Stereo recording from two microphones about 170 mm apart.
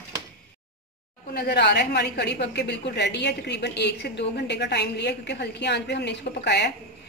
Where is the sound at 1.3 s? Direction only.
70° left (ahead or behind).